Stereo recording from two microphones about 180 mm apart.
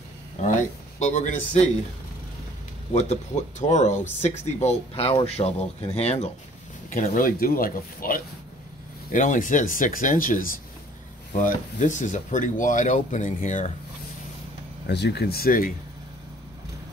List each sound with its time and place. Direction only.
0.5 s speech: 45° left (ahead or behind)
2.9 s speech: 40° left (ahead or behind)
6.9 s speech: 50° left (ahead or behind)
14.9 s speech: 70° left (ahead or behind)